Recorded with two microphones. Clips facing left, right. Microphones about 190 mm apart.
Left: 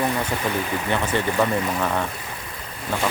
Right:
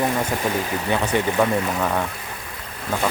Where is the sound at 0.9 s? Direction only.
10° right (ahead or behind).